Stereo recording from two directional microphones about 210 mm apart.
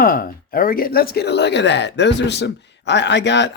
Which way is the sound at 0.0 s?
40° left (ahead or behind).